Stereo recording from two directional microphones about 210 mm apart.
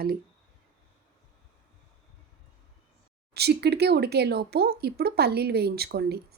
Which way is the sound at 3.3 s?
50° right (ahead or behind).